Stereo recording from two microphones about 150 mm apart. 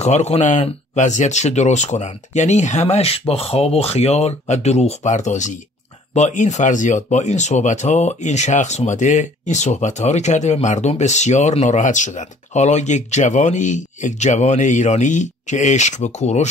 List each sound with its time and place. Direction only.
0.0 s speech: 45° left (ahead or behind)